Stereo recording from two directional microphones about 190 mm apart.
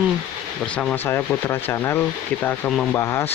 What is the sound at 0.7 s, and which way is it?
Speech, 10° left (ahead or behind).